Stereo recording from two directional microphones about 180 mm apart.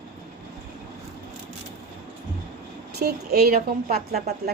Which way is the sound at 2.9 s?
60° right (ahead or behind).